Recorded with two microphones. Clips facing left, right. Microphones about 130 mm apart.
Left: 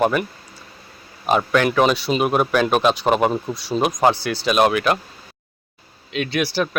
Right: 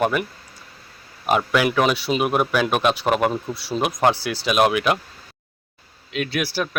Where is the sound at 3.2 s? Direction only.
10° left (ahead or behind).